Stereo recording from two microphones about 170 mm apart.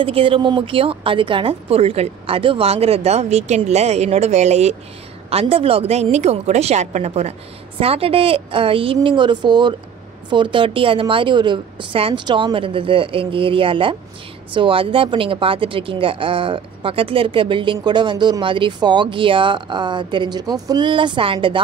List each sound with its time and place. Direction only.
0.0 s speech: 35° right (ahead or behind)